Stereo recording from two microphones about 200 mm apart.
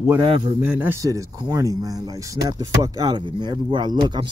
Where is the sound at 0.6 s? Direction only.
10° right (ahead or behind).